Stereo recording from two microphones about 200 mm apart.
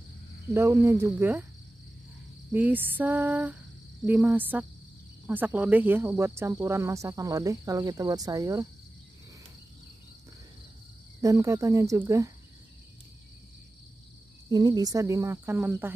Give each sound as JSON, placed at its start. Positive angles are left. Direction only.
{"t": 0.5, "sound": "speech", "side_deg": -15}
{"t": 2.5, "sound": "speech", "side_deg": -10}
{"t": 11.1, "sound": "speech", "side_deg": -15}
{"t": 14.5, "sound": "speech", "side_deg": -20}